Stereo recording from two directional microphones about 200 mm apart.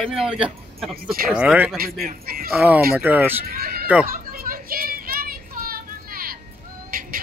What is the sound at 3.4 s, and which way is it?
Speech, 50° right (ahead or behind).